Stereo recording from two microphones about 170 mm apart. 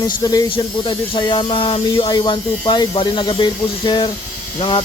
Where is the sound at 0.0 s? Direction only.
20° left (ahead or behind).